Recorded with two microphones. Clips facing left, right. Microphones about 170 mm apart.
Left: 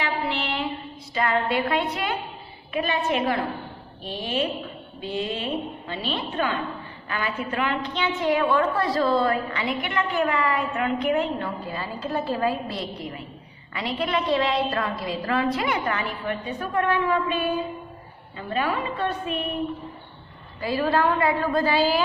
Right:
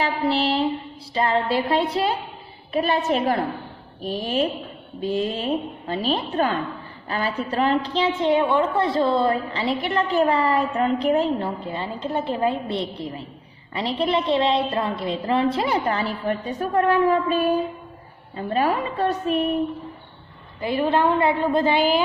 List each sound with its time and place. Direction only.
0.0 s a sound: 35° right (ahead or behind)
1.1 s a woman's voice: 30° right (ahead or behind)
20.6 s a woman's voice: 20° right (ahead or behind)